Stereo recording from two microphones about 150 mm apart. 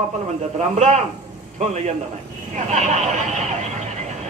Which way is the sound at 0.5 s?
50° right (ahead or behind).